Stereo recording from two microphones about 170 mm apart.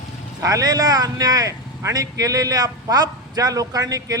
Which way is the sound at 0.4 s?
20° right (ahead or behind).